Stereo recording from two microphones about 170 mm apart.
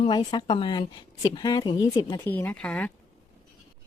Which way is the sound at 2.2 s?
10° left (ahead or behind).